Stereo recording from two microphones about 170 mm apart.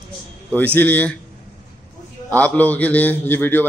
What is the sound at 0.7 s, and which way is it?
Speech, 10° left (ahead or behind).